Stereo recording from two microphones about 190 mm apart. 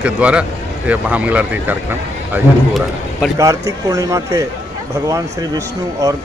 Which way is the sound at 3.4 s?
15° right (ahead or behind).